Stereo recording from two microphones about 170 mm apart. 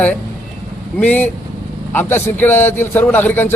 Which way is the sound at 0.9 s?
10° left (ahead or behind).